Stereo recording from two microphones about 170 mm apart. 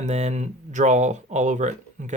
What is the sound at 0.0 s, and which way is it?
Speech, 40° right (ahead or behind).